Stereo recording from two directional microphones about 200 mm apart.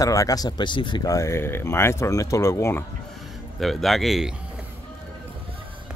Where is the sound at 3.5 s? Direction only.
Centre (ahead or behind).